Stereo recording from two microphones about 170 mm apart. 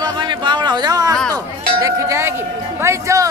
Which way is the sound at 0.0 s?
25° right (ahead or behind).